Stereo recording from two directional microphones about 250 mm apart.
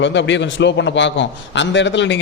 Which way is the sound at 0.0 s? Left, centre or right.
Left.